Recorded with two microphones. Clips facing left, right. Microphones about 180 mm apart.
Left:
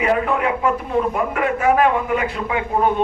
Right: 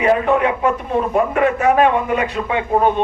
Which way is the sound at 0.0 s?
25° right (ahead or behind).